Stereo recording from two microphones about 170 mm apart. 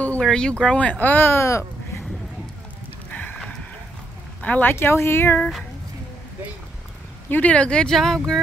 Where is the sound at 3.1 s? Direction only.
5° left (ahead or behind).